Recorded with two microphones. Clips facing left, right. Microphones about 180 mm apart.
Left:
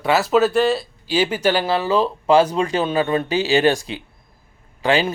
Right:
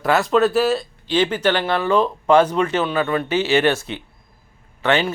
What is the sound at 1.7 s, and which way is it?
Speech, 25° left (ahead or behind).